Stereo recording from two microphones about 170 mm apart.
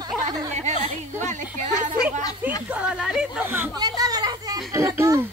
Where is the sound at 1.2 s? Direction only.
45° right (ahead or behind).